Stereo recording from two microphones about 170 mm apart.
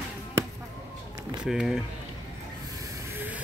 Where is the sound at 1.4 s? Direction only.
5° right (ahead or behind).